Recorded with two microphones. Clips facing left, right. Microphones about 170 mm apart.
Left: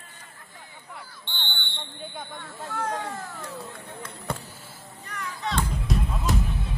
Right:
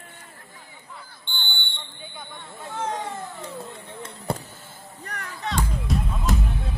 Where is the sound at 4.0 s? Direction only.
30° right (ahead or behind).